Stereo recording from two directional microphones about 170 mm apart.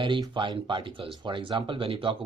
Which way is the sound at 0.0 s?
30° right (ahead or behind).